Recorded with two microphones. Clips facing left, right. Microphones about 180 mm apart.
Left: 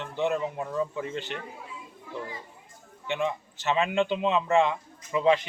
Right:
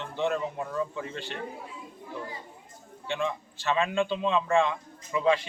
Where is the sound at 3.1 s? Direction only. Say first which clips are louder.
Left 2 dB; 20° left (ahead or behind).